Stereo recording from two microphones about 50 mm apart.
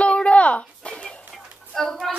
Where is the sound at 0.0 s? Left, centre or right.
Left.